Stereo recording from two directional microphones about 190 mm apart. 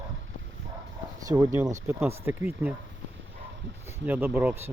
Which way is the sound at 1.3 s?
15° right (ahead or behind).